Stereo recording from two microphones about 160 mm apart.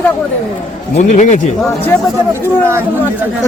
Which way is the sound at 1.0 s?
50° left (ahead or behind).